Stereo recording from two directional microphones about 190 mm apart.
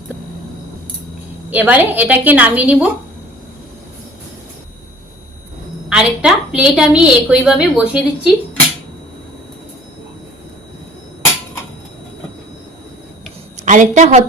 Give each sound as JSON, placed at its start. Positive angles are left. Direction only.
{"t": 1.5, "sound": "a woman's voice", "side_deg": -10}
{"t": 5.9, "sound": "a woman's voice", "side_deg": -5}
{"t": 13.6, "sound": "a woman's voice", "side_deg": -40}